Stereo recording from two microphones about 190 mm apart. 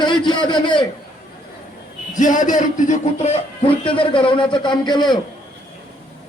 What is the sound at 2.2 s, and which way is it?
A man's voice, 45° left (ahead or behind).